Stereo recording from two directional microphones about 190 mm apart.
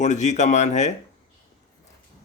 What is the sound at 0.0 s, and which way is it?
Speech, 40° left (ahead or behind).